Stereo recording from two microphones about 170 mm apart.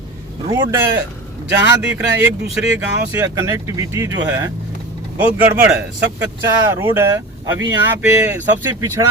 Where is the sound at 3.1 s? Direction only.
15° right (ahead or behind).